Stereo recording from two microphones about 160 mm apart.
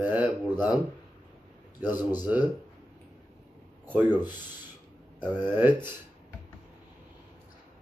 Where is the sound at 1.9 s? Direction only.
10° right (ahead or behind).